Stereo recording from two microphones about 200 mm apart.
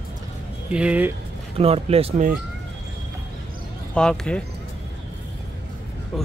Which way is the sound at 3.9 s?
5° left (ahead or behind).